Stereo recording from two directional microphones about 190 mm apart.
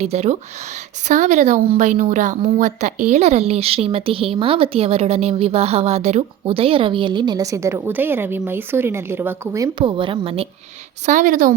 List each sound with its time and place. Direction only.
0.0 s a woman's voice: 35° right (ahead or behind); by 9.6 s 15° right (ahead or behind)
9.7 s a woman's voice: 25° right (ahead or behind)
11.0 s a woman's voice: 40° right (ahead or behind)